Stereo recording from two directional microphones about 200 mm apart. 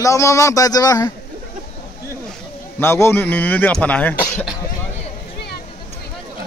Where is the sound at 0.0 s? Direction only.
15° left (ahead or behind).